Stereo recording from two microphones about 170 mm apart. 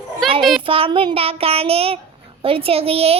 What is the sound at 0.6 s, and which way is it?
A child's voice, 35° right (ahead or behind).